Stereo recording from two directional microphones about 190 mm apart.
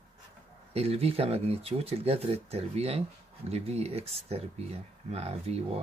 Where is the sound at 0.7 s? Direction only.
30° right (ahead or behind).